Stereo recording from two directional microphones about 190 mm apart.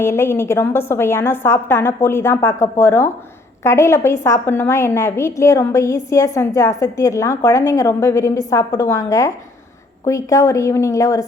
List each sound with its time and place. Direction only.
0.0 s a woman's voice: 10° left (ahead or behind)